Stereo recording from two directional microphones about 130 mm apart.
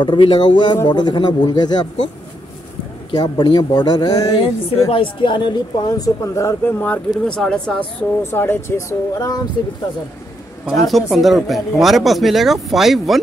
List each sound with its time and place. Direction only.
0.0 s speech: 35° left (ahead or behind)
3.1 s speech: 35° left (ahead or behind)
4.8 s speech: 40° left (ahead or behind); by 7.7 s 5° left (ahead or behind)
8.2 s speech: 20° left (ahead or behind)
10.6 s speech: centre (ahead or behind)